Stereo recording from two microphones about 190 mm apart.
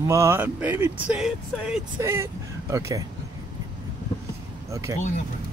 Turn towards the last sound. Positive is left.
turn(degrees=-15)  # may be behind; listen again after turning